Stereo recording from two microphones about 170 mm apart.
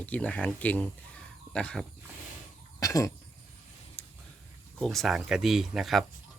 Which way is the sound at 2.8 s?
20° left (ahead or behind).